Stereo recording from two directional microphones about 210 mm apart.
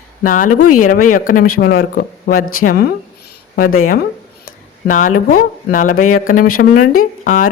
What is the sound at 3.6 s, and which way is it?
Speech, 90° left.